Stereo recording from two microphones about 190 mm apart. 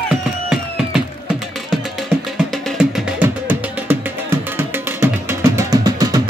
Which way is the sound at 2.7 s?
10° right (ahead or behind).